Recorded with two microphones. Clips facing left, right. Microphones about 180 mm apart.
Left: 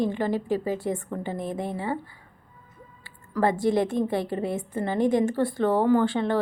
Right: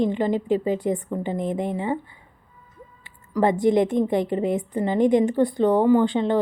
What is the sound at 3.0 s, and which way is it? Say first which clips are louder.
A woman's voice: right 3 dB; 20° right (ahead or behind).